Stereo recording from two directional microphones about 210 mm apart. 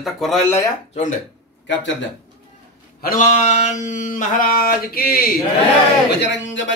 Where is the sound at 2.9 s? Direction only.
40° left (ahead or behind).